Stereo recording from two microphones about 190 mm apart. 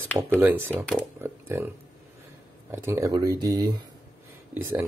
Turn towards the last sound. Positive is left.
turn(degrees=-10)  # may be behind; listen again after turning